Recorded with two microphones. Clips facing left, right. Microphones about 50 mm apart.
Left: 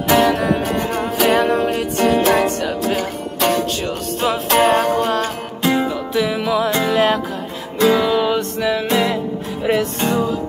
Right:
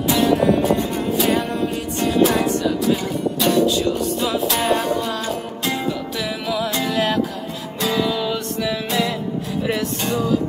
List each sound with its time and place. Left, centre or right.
0.3 s music: left
2.1 s music: left
5.6 s music: left